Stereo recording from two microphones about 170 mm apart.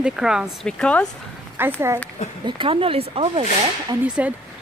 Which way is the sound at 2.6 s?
35° right (ahead or behind).